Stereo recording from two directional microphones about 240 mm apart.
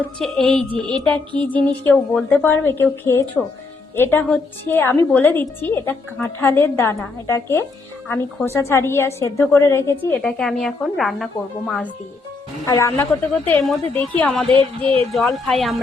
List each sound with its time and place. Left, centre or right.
0.0 s a woman's voice: centre
12.6 s a woman's voice: centre
14.5 s speech: right
15.1 s a woman's voice: centre